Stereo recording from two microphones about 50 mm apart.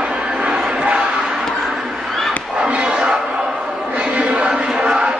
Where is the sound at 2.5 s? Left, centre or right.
Right.